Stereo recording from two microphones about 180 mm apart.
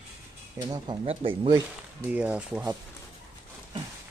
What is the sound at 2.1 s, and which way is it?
Speech, 10° right (ahead or behind).